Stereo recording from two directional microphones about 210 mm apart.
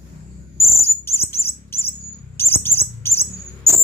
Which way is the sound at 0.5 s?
10° left (ahead or behind).